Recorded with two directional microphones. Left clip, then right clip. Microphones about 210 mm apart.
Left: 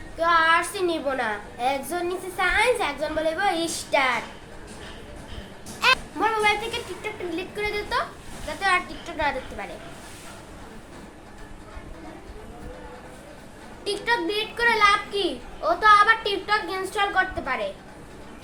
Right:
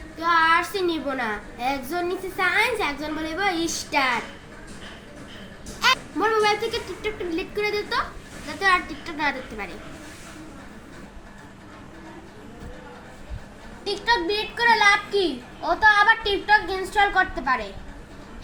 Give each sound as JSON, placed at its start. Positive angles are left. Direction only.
{"t": 0.2, "sound": "a child's voice", "side_deg": 15}
{"t": 5.8, "sound": "a child's voice", "side_deg": 15}
{"t": 13.8, "sound": "a woman's voice", "side_deg": 5}